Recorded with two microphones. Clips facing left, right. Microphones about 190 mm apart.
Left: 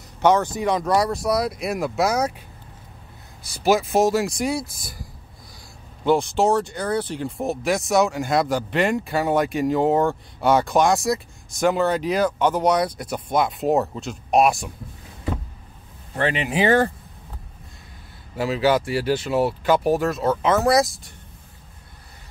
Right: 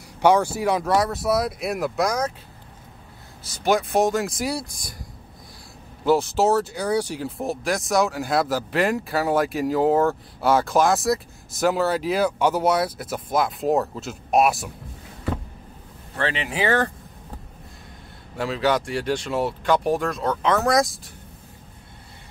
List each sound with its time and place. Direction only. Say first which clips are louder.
0.2 s speech: even; 10° right (ahead or behind); by 2.3 s 10° left (ahead or behind)
3.4 s speech: left 2 dB; 5° left (ahead or behind)
6.0 s speech: even; 5° right (ahead or behind)
16.2 s speech: left 4 dB; 15° left (ahead or behind)
18.3 s speech: left 3 dB; 5° left (ahead or behind)